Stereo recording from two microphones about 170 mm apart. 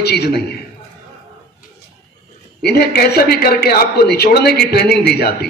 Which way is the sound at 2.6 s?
70° left (ahead or behind).